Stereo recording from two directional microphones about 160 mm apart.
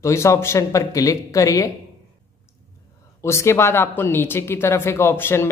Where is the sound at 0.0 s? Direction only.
20° left (ahead or behind).